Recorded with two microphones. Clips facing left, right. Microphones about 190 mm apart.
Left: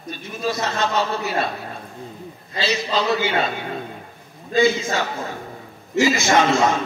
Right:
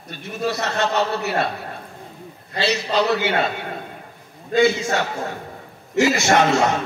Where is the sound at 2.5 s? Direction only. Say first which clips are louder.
Right 2 dB; 65° right (ahead or behind).